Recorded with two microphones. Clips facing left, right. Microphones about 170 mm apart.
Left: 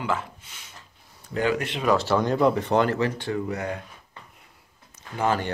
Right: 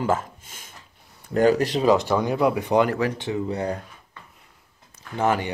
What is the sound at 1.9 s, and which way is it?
Speech, 15° right (ahead or behind).